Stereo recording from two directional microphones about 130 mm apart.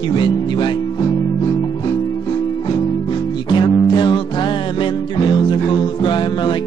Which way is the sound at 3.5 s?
40° left (ahead or behind).